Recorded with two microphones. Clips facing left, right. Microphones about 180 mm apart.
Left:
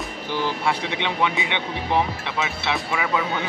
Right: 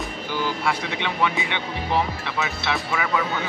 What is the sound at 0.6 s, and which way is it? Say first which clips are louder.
Speech: left 1 dB; 25° left (ahead or behind).